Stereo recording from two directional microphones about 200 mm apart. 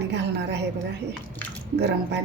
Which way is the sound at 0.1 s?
60° right (ahead or behind).